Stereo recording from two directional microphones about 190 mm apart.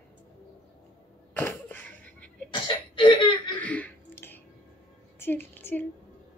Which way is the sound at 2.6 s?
25° left (ahead or behind).